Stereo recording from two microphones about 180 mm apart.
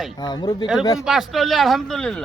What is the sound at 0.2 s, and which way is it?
Speech, 25° left (ahead or behind).